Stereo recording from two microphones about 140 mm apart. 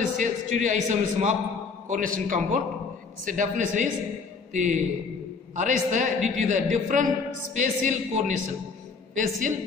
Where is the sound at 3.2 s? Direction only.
65° right (ahead or behind).